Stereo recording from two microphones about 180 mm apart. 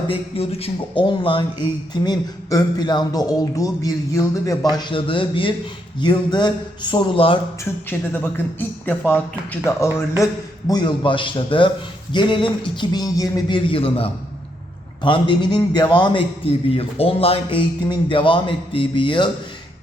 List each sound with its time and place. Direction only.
0.1 s speech: 35° left (ahead or behind)
7.6 s speech: 10° left (ahead or behind); by 19.3 s 25° left (ahead or behind)